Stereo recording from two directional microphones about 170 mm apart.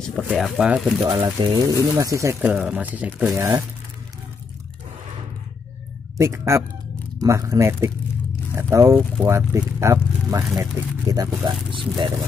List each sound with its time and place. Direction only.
0.0 s speech: 5° left (ahead or behind)
0.3 s speech: 5° right (ahead or behind)
1.0 s speech: 25° right (ahead or behind)
2.5 s speech: 5° right (ahead or behind)
6.1 s speech: 15° right (ahead or behind)